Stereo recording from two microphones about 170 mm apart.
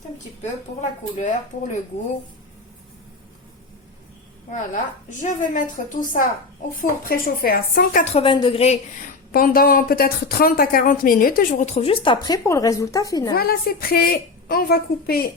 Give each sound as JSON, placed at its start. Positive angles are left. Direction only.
{"t": 0.8, "sound": "a woman's voice", "side_deg": 45}
{"t": 4.5, "sound": "a woman's voice", "side_deg": 45}
{"t": 8.0, "sound": "a woman's voice", "side_deg": 35}
{"t": 9.3, "sound": "speech", "side_deg": 60}
{"t": 11.6, "sound": "speech", "side_deg": 40}
{"t": 13.3, "sound": "speech", "side_deg": 65}